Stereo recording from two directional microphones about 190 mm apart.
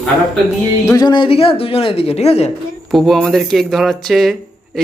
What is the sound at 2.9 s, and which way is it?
Speech, centre (ahead or behind).